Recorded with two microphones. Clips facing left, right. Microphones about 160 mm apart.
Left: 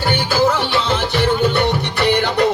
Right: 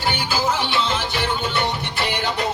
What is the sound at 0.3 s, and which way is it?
Music, 60° left (ahead or behind).